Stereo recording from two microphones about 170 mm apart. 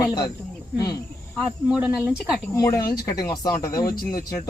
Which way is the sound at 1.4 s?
5° right (ahead or behind).